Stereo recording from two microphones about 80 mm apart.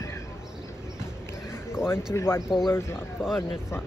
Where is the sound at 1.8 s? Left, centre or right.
Left.